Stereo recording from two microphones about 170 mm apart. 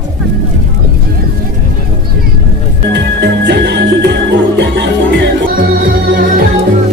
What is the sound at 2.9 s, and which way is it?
Music, 90° right.